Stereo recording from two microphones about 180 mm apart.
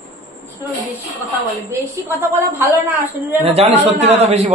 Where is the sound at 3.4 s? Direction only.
35° right (ahead or behind).